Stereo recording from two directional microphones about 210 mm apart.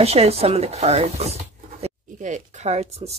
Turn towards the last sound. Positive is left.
turn(degrees=-30)  # may be behind; listen again after turning